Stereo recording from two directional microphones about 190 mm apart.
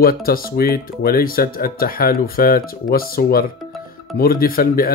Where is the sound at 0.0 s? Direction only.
50° left (ahead or behind).